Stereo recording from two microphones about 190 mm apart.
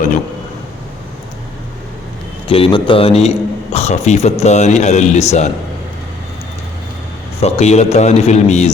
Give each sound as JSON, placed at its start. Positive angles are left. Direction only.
{"t": 2.5, "sound": "a man's voice", "side_deg": 25}
{"t": 7.4, "sound": "a man's voice", "side_deg": 35}